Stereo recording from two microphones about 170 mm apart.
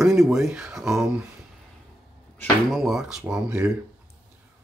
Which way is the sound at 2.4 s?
Centre (ahead or behind).